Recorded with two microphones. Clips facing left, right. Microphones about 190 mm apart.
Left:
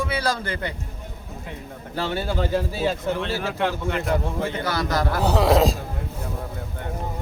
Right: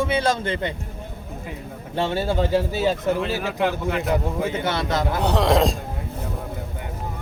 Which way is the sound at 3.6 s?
5° right (ahead or behind).